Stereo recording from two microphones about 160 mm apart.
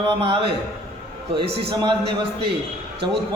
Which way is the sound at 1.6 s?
30° right (ahead or behind).